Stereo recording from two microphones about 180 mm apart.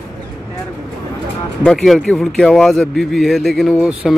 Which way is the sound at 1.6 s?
Centre (ahead or behind).